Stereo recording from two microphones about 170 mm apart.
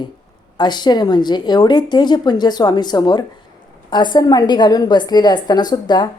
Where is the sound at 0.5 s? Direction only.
25° left (ahead or behind).